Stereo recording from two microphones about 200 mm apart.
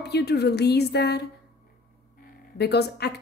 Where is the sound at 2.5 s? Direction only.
55° left (ahead or behind).